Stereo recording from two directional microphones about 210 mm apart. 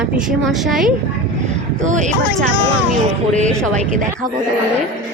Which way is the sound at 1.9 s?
35° right (ahead or behind).